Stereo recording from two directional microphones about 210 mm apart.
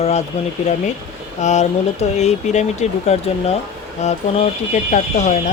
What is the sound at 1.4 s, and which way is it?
Speech, 35° left (ahead or behind).